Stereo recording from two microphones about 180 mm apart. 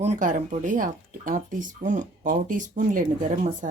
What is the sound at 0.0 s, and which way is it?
Speech, 40° right (ahead or behind).